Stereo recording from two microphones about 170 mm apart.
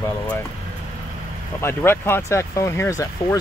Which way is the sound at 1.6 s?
15° left (ahead or behind).